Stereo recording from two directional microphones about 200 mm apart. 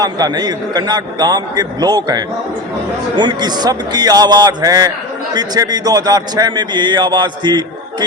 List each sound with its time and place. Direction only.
0.0 s a man's voice: 20° right (ahead or behind)